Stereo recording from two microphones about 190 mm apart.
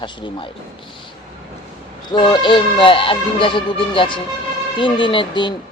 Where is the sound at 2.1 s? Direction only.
25° left (ahead or behind).